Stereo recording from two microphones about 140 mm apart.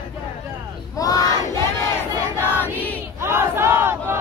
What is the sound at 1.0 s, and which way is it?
Battle cry, 25° left (ahead or behind).